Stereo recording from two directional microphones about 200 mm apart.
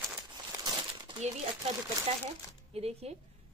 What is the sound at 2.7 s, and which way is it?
Speech, 30° right (ahead or behind).